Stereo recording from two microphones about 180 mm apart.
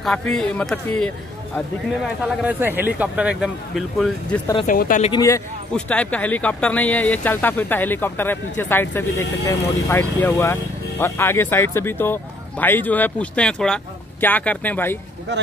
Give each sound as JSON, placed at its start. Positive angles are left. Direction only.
{"t": 0.0, "sound": "speech", "side_deg": 5}
{"t": 2.4, "sound": "speech", "side_deg": -10}
{"t": 4.6, "sound": "speech", "side_deg": 50}
{"t": 5.1, "sound": "speech", "side_deg": 20}
{"t": 5.7, "sound": "speech", "side_deg": 5}